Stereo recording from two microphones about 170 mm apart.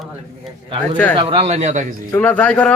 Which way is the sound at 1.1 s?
35° right (ahead or behind).